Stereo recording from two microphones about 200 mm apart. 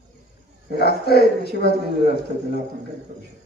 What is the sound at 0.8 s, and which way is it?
A man's voice, 55° left (ahead or behind).